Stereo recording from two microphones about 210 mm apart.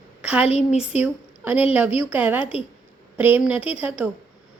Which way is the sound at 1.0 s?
10° right (ahead or behind).